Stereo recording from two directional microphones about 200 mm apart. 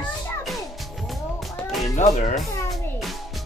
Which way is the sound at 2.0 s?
35° left (ahead or behind).